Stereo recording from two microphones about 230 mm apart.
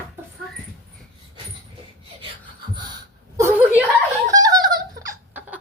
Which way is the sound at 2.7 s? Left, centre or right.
Centre.